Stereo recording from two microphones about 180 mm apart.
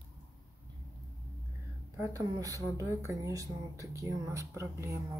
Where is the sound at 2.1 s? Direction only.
20° right (ahead or behind).